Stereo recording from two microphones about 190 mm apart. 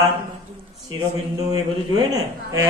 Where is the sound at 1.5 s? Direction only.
20° right (ahead or behind).